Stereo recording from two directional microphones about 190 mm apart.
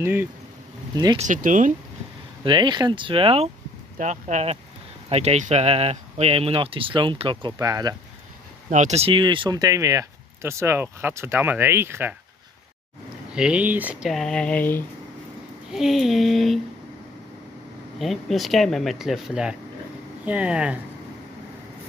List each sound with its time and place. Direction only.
0.0 s speech: 10° right (ahead or behind)
1.1 s speech: 40° right (ahead or behind)
2.4 s speech: 25° right (ahead or behind)
8.6 s speech: 40° right (ahead or behind); by 12.2 s 10° right (ahead or behind)
13.3 s speech: 5° right (ahead or behind)
17.9 s speech: centre (ahead or behind)